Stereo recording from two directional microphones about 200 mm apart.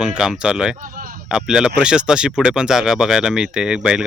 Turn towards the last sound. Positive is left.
turn(degrees=-5)  # may be behind; listen again after turning